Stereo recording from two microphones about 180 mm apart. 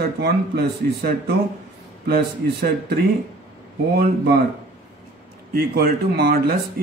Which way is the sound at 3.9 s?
60° right (ahead or behind).